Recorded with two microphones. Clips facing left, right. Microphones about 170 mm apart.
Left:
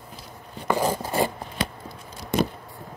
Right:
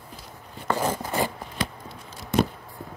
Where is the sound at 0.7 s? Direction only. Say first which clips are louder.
Left 2 dB; 15° left (ahead or behind).